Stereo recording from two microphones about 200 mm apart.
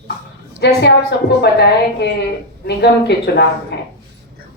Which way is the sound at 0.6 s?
55° left (ahead or behind).